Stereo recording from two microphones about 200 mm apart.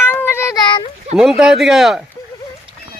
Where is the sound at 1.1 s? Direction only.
Centre (ahead or behind).